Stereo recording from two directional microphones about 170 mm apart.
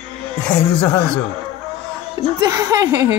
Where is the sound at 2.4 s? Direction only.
20° right (ahead or behind).